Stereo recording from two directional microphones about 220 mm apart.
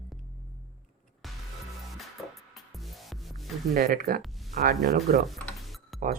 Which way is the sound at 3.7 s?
45° right (ahead or behind).